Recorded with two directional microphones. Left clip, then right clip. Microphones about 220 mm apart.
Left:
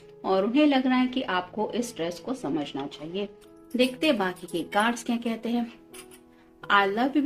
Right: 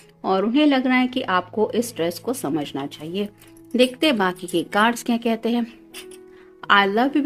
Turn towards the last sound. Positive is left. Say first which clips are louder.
# right 5 dB
turn(degrees=-50)  # may be behind; listen again after turning